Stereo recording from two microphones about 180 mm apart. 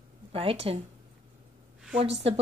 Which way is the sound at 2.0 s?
35° right (ahead or behind).